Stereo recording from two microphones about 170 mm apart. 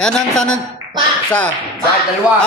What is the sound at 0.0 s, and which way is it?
Speech, 5° left (ahead or behind).